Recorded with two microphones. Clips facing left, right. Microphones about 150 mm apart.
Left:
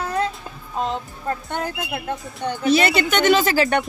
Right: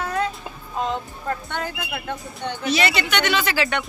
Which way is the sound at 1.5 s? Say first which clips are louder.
Left 2 dB; 45° left (ahead or behind).